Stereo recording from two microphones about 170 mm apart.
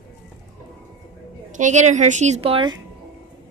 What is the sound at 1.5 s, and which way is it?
A woman's voice, 45° right (ahead or behind).